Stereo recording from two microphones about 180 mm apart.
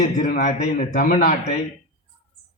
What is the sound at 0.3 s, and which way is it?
A man's voice, 40° left (ahead or behind).